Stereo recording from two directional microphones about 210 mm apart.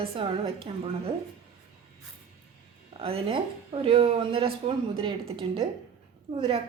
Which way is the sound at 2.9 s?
25° right (ahead or behind).